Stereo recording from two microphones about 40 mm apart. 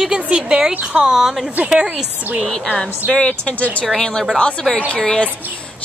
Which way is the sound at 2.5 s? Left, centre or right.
Centre.